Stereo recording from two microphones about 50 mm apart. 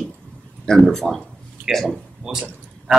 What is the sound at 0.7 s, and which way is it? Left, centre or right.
Speech, centre.